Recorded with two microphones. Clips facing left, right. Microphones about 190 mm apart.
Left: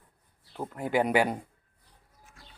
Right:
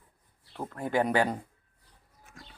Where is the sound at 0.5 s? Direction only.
10° left (ahead or behind).